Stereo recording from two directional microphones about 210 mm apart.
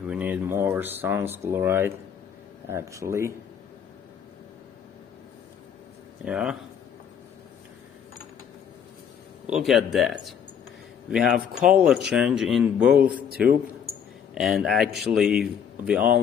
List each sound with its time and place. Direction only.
0.0 s speech: 5° right (ahead or behind)
6.2 s a man's voice: 5° right (ahead or behind)
9.5 s a man's voice: centre (ahead or behind)
14.3 s a man's voice: centre (ahead or behind)